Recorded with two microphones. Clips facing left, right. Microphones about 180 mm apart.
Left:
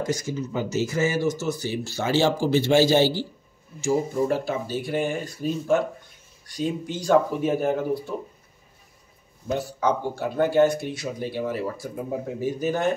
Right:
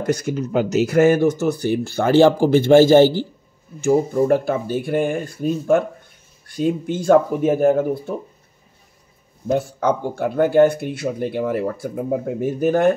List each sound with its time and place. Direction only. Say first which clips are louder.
0.0 s speech: right 6 dB; 60° right (ahead or behind)
9.5 s speech: right 5 dB; 50° right (ahead or behind)